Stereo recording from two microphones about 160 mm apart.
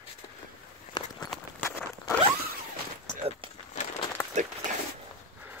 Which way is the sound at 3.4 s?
35° right (ahead or behind).